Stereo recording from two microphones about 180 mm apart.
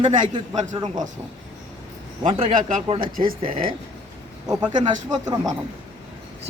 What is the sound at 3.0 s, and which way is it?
Speech, 50° right (ahead or behind).